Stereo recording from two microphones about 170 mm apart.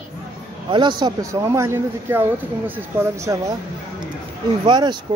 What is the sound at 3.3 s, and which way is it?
Speech, 25° right (ahead or behind).